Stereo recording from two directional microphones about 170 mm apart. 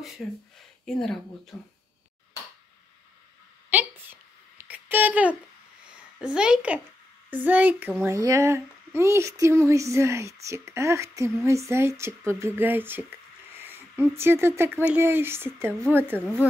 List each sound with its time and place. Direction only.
0.2 s speech: centre (ahead or behind)
3.7 s a sound: 10° right (ahead or behind)
6.2 s speech: 5° right (ahead or behind)